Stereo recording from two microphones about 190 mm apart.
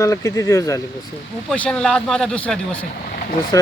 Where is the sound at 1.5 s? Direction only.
5° left (ahead or behind).